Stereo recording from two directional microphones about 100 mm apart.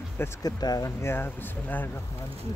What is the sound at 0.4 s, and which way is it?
Speech, 40° left (ahead or behind).